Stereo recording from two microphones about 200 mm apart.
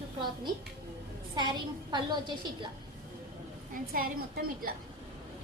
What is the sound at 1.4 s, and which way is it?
Speech, 20° right (ahead or behind).